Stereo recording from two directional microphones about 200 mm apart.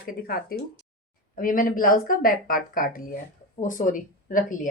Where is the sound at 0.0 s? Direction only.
45° left (ahead or behind).